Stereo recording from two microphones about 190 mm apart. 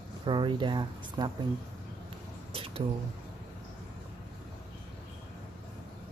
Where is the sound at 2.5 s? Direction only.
30° right (ahead or behind).